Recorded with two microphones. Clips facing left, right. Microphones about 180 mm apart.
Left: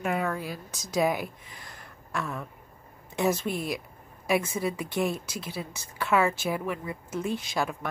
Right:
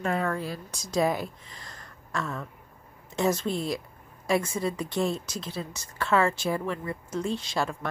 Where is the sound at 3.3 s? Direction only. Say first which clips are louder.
Right 2 dB; 25° right (ahead or behind).